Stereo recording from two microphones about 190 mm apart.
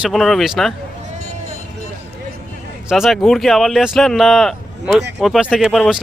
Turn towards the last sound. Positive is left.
turn(degrees=-5)  # may be behind; listen again after turning